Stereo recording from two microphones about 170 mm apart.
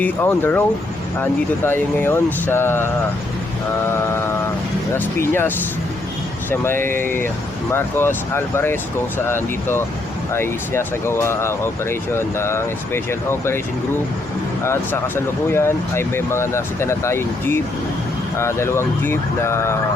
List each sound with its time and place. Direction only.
0.0 s speech: 10° left (ahead or behind)
6.5 s speech: 15° left (ahead or behind)
6.7 s speech: 55° right (ahead or behind)
7.7 s speech: 15° left (ahead or behind)
14.6 s speech: 15° left (ahead or behind)